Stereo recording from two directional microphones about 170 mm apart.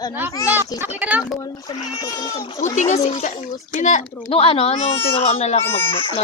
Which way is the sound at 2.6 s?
45° left (ahead or behind).